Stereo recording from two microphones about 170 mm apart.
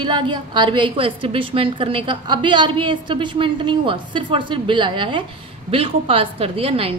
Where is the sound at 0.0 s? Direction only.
30° right (ahead or behind).